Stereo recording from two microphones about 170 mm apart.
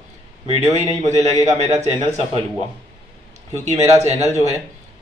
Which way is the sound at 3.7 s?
40° right (ahead or behind).